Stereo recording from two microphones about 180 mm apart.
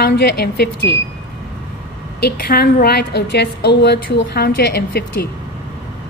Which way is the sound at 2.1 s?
60° left (ahead or behind).